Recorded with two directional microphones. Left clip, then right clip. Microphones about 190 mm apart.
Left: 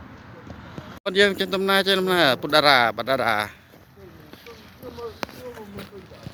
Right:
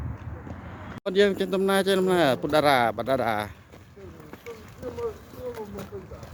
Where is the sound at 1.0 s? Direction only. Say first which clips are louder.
Left 3 dB; 5° right (ahead or behind).